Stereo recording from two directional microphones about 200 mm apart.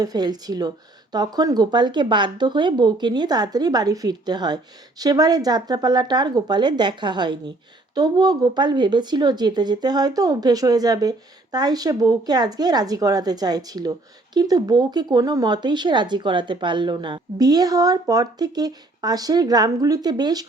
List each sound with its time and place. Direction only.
0.0 s speech: 20° right (ahead or behind)